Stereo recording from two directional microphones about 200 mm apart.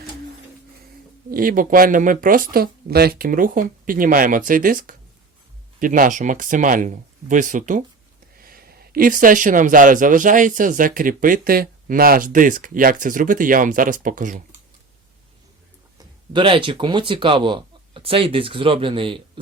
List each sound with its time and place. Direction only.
1.3 s speech: 45° right (ahead or behind)
16.3 s speech: 25° right (ahead or behind)